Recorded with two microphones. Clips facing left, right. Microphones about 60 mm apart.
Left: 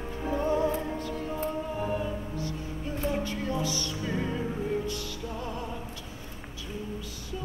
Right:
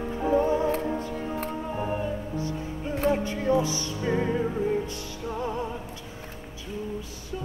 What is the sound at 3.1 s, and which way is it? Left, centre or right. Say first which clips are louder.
Music: right 8 dB; right.